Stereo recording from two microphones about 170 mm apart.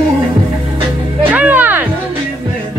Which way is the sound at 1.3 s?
10° right (ahead or behind).